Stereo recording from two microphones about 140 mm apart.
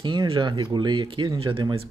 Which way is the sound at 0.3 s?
35° right (ahead or behind).